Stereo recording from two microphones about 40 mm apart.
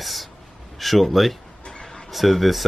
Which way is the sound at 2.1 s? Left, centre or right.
Centre.